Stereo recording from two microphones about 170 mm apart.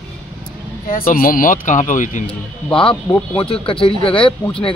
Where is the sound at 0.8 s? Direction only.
55° left (ahead or behind).